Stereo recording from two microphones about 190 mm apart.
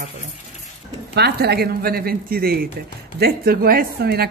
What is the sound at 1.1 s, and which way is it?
Speech, 60° right (ahead or behind).